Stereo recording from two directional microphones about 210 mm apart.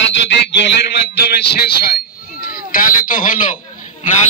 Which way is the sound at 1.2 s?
50° left (ahead or behind).